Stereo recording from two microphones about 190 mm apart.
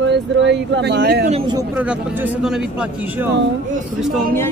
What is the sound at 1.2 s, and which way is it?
Speech, 30° right (ahead or behind).